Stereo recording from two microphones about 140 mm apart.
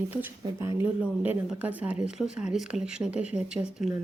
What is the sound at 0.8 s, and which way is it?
Speech, 10° right (ahead or behind).